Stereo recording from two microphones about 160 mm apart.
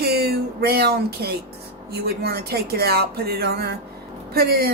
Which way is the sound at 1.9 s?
80° right.